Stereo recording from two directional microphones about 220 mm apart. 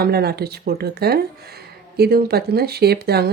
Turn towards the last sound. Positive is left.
turn(degrees=-45)  # may be behind; listen again after turning